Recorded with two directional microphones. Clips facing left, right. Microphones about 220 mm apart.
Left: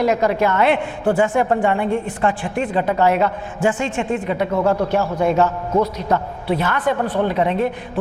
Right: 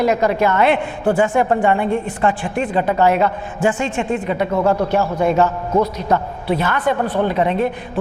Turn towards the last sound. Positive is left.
turn(degrees=-15)  # may be behind; listen again after turning